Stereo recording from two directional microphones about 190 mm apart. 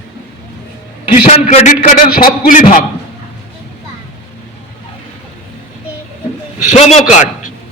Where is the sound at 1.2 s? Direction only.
40° left (ahead or behind).